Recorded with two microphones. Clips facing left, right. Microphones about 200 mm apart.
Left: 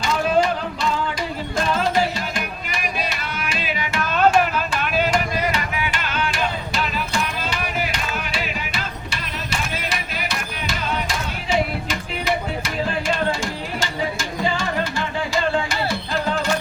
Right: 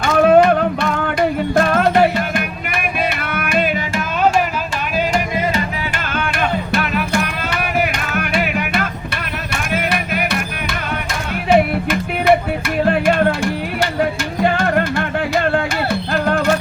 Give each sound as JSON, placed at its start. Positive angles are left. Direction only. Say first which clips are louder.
{"t": 0.0, "sound": "music", "louder": "right 8 dB", "side_deg": -60}
{"t": 5.9, "sound": "music", "louder": "right 3 dB", "side_deg": -55}